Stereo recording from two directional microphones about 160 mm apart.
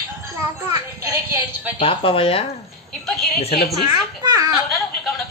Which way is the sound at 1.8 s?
35° left (ahead or behind).